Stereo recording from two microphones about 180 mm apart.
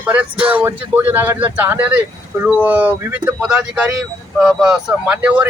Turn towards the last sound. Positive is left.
turn(degrees=-5)  # may be behind; listen again after turning